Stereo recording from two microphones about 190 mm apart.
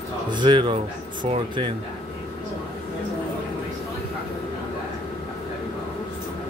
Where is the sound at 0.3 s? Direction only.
25° right (ahead or behind).